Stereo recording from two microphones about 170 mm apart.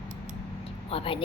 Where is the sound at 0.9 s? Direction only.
35° left (ahead or behind).